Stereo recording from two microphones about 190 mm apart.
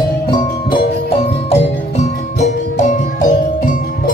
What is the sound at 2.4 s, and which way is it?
Music, 40° left (ahead or behind).